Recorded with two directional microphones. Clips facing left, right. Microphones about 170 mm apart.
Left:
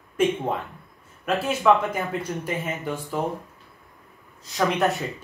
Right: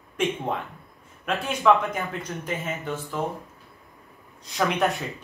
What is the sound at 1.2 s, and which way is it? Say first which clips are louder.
Speech: left 1 dB; 5° left (ahead or behind).